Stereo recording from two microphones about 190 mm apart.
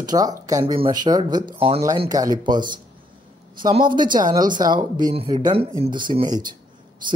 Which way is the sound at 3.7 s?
25° right (ahead or behind).